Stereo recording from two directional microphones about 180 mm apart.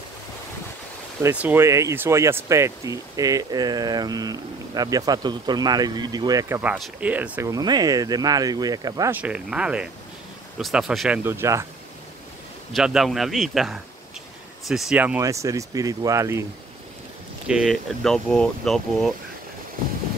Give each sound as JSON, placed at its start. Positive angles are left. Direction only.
{"t": 1.2, "sound": "speech", "side_deg": -10}
{"t": 6.6, "sound": "speech", "side_deg": -5}
{"t": 7.5, "sound": "speech", "side_deg": -20}
{"t": 9.1, "sound": "speech", "side_deg": -5}
{"t": 11.2, "sound": "speech", "side_deg": -15}
{"t": 12.7, "sound": "speech", "side_deg": 0}
{"t": 17.5, "sound": "speech", "side_deg": 0}